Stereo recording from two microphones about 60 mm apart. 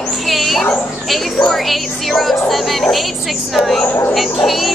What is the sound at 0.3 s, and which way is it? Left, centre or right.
Dog, centre.